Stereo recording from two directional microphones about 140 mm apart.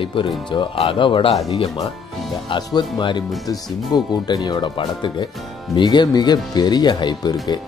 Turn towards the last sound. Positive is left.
turn(degrees=30)  # may be behind; listen again after turning